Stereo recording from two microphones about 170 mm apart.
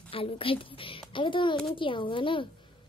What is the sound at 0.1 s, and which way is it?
A woman's voice, 35° left (ahead or behind).